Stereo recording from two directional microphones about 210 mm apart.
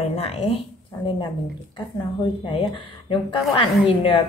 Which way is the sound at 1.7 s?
20° left (ahead or behind).